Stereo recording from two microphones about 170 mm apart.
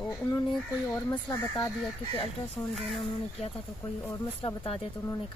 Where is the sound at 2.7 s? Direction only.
Centre (ahead or behind).